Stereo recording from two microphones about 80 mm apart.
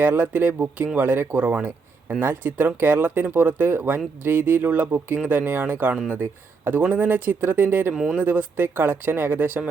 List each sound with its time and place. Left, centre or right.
0.0 s speech: right